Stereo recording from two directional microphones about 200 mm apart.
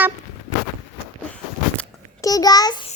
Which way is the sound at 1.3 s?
5° left (ahead or behind).